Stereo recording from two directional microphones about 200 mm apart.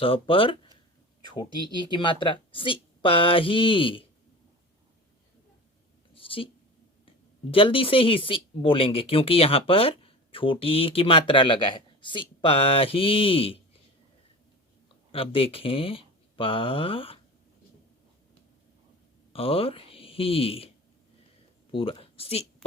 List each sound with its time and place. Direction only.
0.0 s speech: 25° left (ahead or behind)
6.1 s a sound: 25° left (ahead or behind)
7.5 s speech: 25° left (ahead or behind)
15.1 s speech: 25° left (ahead or behind)
19.3 s speech: 30° left (ahead or behind)
21.7 s speech: 25° left (ahead or behind)